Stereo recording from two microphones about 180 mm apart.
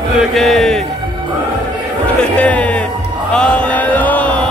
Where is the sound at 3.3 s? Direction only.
5° left (ahead or behind).